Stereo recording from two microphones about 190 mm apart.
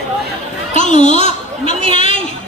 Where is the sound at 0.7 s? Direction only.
40° left (ahead or behind).